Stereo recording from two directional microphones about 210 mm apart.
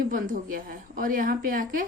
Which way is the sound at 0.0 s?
40° right (ahead or behind).